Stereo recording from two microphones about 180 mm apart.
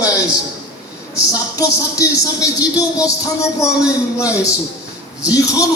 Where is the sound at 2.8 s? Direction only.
20° left (ahead or behind).